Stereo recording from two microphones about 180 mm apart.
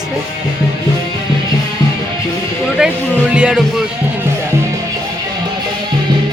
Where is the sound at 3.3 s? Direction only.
5° right (ahead or behind).